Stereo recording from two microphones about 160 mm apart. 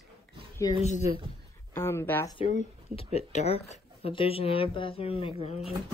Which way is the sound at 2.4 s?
40° left (ahead or behind).